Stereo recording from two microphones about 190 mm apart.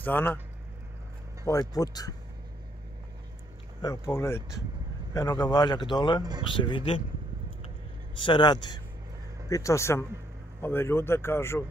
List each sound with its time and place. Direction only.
0.0 s speech: 10° left (ahead or behind)
1.5 s speech: 20° left (ahead or behind)
3.8 s speech: 15° left (ahead or behind)
8.2 s speech: 25° left (ahead or behind)